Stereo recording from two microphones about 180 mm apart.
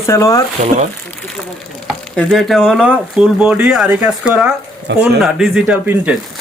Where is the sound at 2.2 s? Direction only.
Centre (ahead or behind).